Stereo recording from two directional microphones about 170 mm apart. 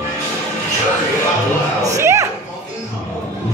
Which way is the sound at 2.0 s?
15° right (ahead or behind).